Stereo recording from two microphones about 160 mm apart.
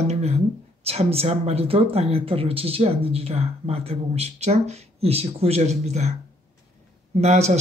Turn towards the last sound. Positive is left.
turn(degrees=-45)  # may be behind; listen again after turning